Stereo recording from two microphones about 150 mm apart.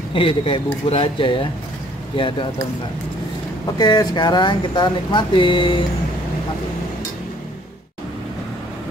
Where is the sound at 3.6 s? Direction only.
25° left (ahead or behind).